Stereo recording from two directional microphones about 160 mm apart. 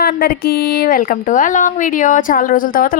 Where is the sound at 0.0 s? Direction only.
70° left (ahead or behind).